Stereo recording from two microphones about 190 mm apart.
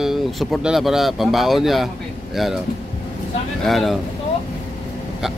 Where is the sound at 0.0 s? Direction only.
Centre (ahead or behind).